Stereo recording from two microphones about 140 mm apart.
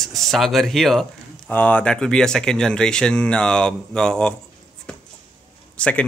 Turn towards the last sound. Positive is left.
turn(degrees=10)  # may be behind; listen again after turning